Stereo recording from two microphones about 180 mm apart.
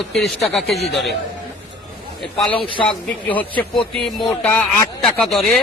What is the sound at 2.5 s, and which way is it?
Speech, 30° left (ahead or behind).